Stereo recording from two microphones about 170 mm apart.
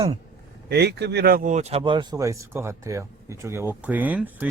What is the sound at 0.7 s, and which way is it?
Speech, 80° right.